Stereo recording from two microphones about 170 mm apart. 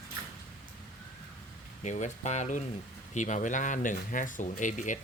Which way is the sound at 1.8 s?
45° left (ahead or behind).